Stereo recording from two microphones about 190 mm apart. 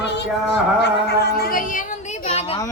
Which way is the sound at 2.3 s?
35° left (ahead or behind).